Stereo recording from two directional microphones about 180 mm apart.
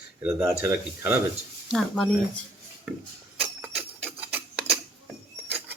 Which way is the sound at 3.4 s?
10° right (ahead or behind).